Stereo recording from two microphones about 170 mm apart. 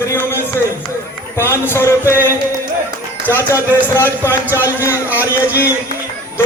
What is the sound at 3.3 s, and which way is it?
Music, 15° left (ahead or behind).